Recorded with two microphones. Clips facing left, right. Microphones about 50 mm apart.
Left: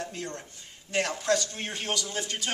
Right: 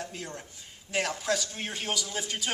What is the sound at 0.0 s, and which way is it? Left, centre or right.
A man's voice, centre.